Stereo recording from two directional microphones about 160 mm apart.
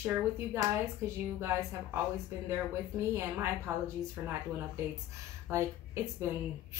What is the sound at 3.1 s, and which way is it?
Speech, 15° right (ahead or behind).